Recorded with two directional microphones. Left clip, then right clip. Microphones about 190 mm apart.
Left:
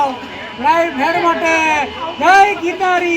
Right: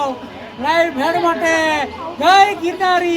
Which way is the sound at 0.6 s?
15° right (ahead or behind).